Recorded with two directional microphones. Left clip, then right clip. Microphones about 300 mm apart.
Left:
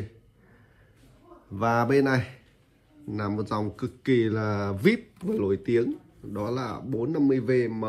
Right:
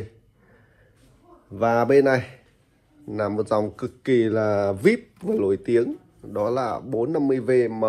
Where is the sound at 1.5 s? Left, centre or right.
Centre.